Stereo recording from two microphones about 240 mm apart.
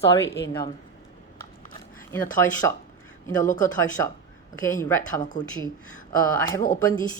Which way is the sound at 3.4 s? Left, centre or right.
Left.